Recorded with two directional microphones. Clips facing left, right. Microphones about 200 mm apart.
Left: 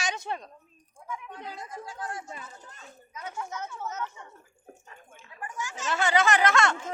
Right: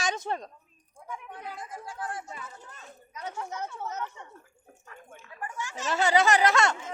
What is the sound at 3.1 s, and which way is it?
Speech, 35° right (ahead or behind).